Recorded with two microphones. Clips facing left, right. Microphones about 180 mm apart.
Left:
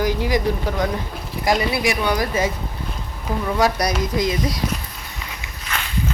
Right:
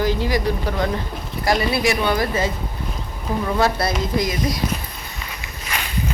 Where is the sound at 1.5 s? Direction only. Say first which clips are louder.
Right 1 dB; 20° left (ahead or behind).